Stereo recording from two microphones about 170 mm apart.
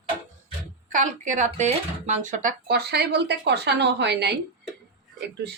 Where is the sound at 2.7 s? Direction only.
70° right (ahead or behind).